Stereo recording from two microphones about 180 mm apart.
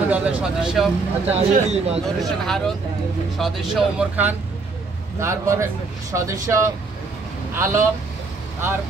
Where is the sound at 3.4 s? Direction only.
Centre (ahead or behind).